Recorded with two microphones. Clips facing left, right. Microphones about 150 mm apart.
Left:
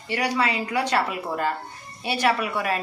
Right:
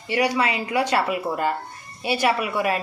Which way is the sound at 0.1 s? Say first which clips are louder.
Right 3 dB; 10° right (ahead or behind).